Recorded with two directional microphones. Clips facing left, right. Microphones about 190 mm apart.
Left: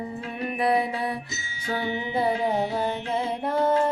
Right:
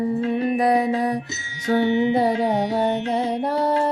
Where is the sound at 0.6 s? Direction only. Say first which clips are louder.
Right 2 dB; 40° right (ahead or behind).